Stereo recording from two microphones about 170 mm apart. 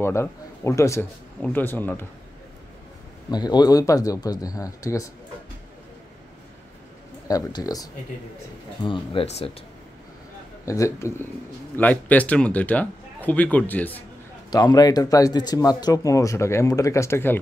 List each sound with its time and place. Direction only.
0.0 s a man's voice: 15° left (ahead or behind)
3.3 s speech: 25° left (ahead or behind)
7.2 s speech: 20° left (ahead or behind)
10.6 s a man's voice: 20° left (ahead or behind)
14.5 s speech: 25° left (ahead or behind)